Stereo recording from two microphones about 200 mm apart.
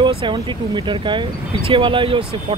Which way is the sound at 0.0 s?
25° right (ahead or behind).